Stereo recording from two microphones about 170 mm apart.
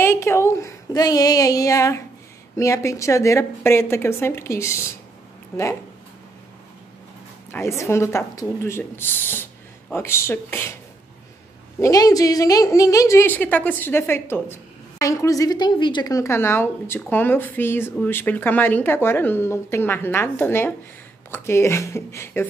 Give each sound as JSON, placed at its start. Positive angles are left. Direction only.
{"t": 0.0, "sound": "a woman's voice", "side_deg": 15}
{"t": 7.5, "sound": "a woman's voice", "side_deg": 15}
{"t": 11.8, "sound": "a woman's voice", "side_deg": 20}